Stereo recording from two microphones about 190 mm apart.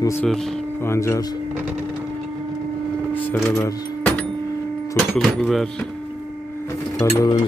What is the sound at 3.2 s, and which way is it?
Speech, 15° left (ahead or behind).